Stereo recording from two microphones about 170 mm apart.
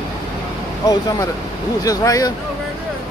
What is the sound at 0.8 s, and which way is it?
Speech, 25° left (ahead or behind).